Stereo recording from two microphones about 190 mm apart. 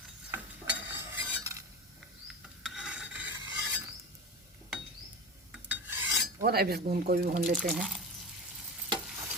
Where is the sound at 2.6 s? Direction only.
5° right (ahead or behind).